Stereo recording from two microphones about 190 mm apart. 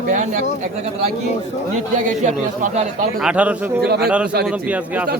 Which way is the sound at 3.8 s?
60° right (ahead or behind).